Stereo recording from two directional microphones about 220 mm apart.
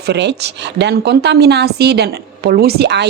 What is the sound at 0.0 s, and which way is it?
Speech, 50° right (ahead or behind).